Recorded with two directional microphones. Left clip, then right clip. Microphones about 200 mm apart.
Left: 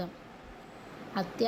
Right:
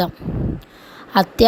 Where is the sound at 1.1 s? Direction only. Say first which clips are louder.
Right 18 dB; 55° right (ahead or behind).